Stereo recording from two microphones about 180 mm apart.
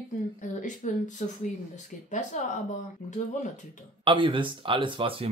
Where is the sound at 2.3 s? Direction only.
45° left (ahead or behind).